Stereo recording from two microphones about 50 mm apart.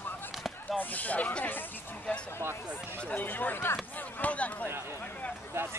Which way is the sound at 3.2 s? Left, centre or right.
Left.